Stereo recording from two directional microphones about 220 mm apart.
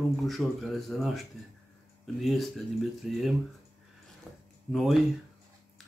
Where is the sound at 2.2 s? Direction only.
Centre (ahead or behind).